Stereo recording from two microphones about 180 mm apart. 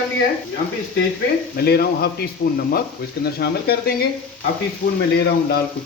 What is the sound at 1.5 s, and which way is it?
Speech, 60° left (ahead or behind).